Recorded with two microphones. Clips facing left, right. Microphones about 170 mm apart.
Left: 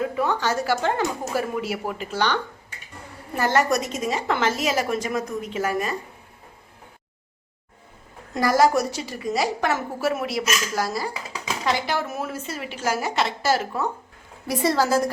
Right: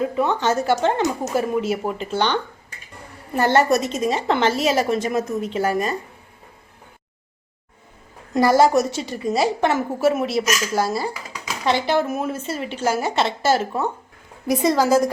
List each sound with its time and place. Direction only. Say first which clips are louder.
0.2 s a woman's voice: right 4 dB; 25° right (ahead or behind)
8.3 s a woman's voice: right 4 dB; 25° right (ahead or behind)